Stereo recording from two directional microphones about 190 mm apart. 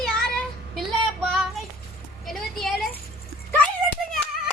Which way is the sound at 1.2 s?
Centre (ahead or behind).